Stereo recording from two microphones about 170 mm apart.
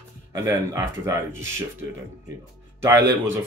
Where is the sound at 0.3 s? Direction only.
15° right (ahead or behind).